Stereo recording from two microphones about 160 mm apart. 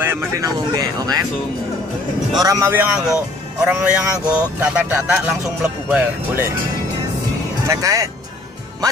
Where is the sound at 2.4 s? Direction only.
20° right (ahead or behind).